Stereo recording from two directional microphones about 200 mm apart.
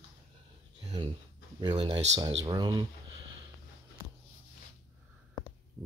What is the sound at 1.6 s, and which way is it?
Speech, 25° right (ahead or behind).